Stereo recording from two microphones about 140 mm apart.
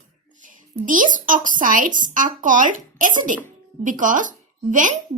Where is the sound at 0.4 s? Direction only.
70° right (ahead or behind).